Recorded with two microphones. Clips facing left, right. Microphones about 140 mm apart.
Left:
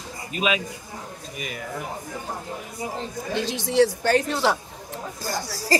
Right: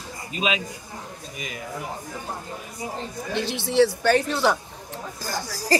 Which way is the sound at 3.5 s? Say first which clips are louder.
Even; 40° left (ahead or behind).